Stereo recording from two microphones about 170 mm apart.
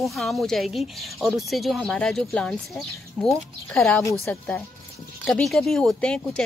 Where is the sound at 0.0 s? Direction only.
Centre (ahead or behind).